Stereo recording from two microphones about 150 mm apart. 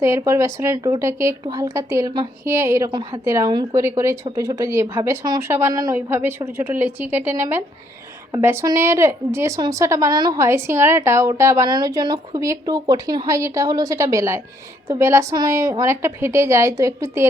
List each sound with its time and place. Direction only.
0.0 s a woman's voice: 20° right (ahead or behind)